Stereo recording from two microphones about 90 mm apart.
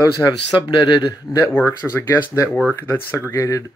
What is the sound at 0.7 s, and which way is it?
Speech, 70° left (ahead or behind).